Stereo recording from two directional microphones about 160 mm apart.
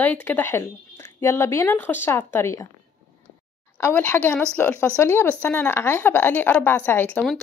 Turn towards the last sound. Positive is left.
turn(degrees=10)  # may be behind; listen again after turning